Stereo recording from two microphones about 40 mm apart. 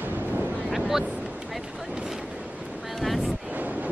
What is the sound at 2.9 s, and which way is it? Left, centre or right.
Vehicle, centre.